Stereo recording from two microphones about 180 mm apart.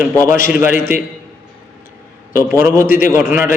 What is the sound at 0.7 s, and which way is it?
Speech, 45° left (ahead or behind).